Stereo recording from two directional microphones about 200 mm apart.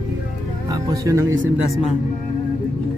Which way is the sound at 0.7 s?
15° right (ahead or behind).